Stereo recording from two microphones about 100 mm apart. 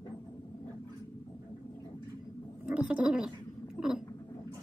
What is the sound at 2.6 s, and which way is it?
Gargling, 10° right (ahead or behind).